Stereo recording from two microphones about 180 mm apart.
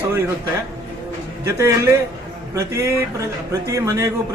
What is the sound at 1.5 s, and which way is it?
Speech, 15° right (ahead or behind).